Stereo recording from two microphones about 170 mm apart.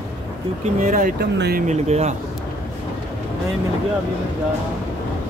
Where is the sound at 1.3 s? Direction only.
80° right.